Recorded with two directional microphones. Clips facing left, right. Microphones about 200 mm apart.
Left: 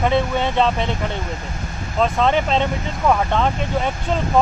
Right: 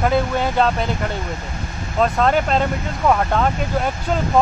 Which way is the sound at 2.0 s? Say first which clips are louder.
Right 1 dB; 5° right (ahead or behind).